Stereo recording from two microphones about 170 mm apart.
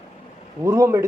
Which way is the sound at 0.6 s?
15° right (ahead or behind).